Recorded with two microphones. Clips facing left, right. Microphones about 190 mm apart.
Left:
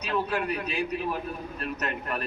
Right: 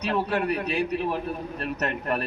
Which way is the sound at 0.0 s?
35° right (ahead or behind).